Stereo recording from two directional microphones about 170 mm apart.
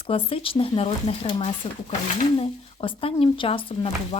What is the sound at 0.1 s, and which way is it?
Speech, 35° left (ahead or behind).